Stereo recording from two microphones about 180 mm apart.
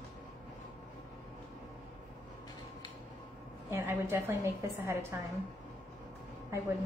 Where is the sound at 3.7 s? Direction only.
15° right (ahead or behind).